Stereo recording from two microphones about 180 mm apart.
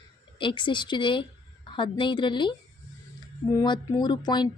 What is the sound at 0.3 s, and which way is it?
Speech, 25° left (ahead or behind).